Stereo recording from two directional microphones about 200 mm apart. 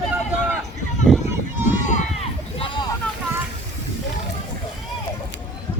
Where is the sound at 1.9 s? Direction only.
35° left (ahead or behind).